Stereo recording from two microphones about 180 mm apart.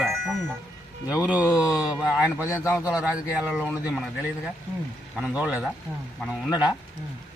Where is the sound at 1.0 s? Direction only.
5° right (ahead or behind).